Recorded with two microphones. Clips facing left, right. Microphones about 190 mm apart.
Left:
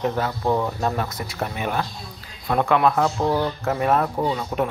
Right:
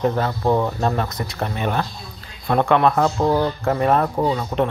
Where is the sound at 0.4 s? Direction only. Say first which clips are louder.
Right 4 dB; 15° right (ahead or behind).